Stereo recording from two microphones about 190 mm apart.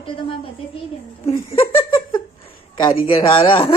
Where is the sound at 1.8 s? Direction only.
30° left (ahead or behind).